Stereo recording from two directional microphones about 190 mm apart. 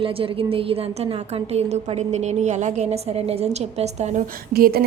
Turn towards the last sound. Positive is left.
turn(degrees=-50)  # may be behind; listen again after turning